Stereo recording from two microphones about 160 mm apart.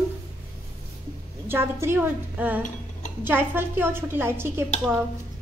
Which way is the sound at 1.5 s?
15° right (ahead or behind).